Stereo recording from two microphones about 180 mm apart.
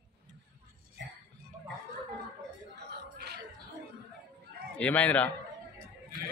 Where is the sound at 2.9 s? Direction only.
65° right (ahead or behind).